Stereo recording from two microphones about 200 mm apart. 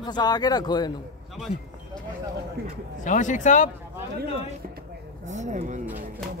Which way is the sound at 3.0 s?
40° left (ahead or behind).